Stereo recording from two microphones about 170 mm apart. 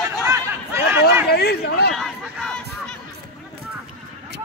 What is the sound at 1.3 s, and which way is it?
Speech, 70° left (ahead or behind).